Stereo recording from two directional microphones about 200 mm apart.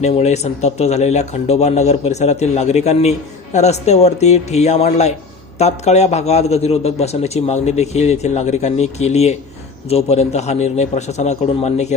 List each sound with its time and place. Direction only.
0.0 s a man's voice: 35° left (ahead or behind)